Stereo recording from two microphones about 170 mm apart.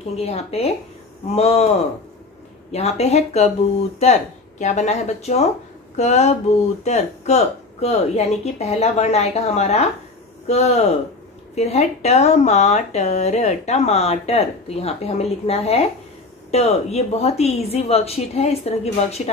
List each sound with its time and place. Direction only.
0.2 s speech: 40° left (ahead or behind)
2.7 s speech: 40° left (ahead or behind)